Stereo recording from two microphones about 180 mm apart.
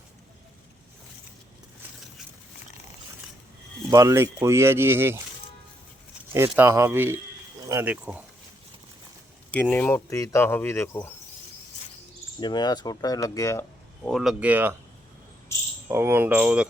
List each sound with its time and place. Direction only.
3.8 s speech: 20° right (ahead or behind)
6.3 s speech: 15° right (ahead or behind)
9.5 s speech: 10° left (ahead or behind)
12.4 s speech: 25° left (ahead or behind)
14.1 s speech: centre (ahead or behind)
15.9 s speech: 15° right (ahead or behind)